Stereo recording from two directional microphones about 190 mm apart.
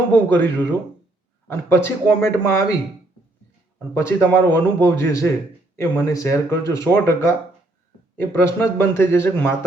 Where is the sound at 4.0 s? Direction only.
10° left (ahead or behind).